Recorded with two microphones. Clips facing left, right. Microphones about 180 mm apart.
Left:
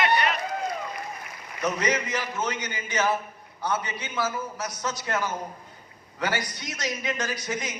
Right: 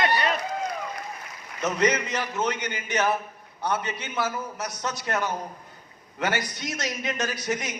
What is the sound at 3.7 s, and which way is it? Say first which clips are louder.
Speech: right 1 dB; 25° left (ahead or behind).